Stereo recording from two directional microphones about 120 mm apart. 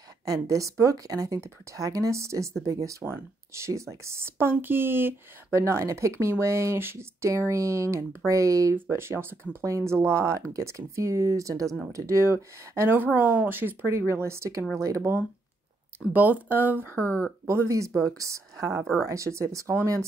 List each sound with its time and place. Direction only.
0.2 s speech: 25° right (ahead or behind)
17.0 s speech: 15° left (ahead or behind)
17.5 s speech: 25° right (ahead or behind)